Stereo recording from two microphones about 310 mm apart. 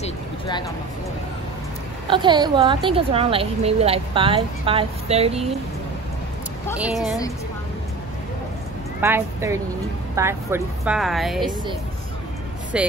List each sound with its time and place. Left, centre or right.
0.0 s a sound: centre
2.0 s a woman's voice: centre
6.8 s speech: centre
9.0 s a woman's voice: centre
12.7 s speech: centre